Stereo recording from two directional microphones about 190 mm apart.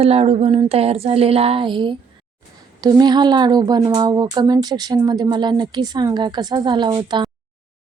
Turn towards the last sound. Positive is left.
turn(degrees=-25)  # may be behind; listen again after turning